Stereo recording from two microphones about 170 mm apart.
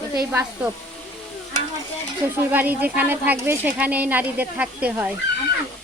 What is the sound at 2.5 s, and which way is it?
Speech, 10° right (ahead or behind).